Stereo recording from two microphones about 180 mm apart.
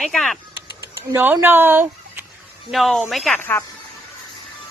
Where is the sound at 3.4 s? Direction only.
10° left (ahead or behind).